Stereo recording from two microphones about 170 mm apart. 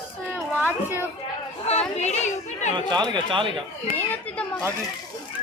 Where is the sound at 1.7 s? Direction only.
40° left (ahead or behind).